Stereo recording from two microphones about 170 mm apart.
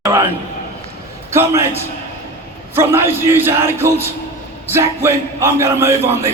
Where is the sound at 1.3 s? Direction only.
15° right (ahead or behind).